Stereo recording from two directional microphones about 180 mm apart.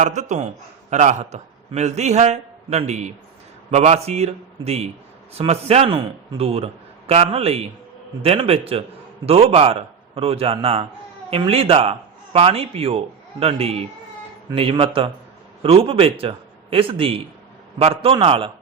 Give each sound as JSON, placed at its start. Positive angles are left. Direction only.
{"t": 0.0, "sound": "a man's voice", "side_deg": -40}